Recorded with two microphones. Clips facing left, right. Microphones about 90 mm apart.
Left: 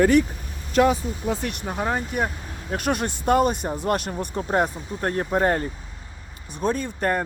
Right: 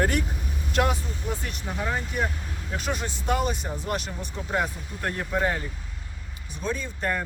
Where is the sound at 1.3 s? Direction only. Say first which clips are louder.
Left 5 dB; 80° left; by 2.7 s 40° left (ahead or behind).